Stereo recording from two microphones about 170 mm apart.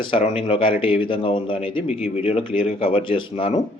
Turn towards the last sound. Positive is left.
turn(degrees=30)  # may be behind; listen again after turning